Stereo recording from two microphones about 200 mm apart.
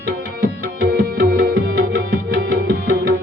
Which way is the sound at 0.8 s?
45° right (ahead or behind).